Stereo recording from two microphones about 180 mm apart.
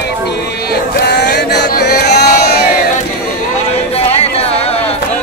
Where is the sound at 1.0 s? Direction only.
65° left (ahead or behind).